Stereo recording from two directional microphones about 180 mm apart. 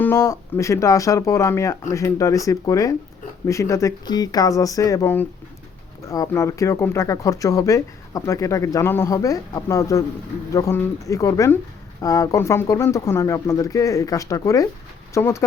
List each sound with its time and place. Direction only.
0.0 s speech: 15° left (ahead or behind)